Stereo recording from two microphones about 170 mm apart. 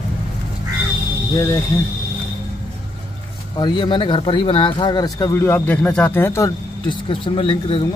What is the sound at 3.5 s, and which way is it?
Speech, 25° left (ahead or behind).